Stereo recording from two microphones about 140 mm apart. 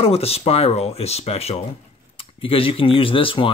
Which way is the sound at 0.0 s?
45° left (ahead or behind).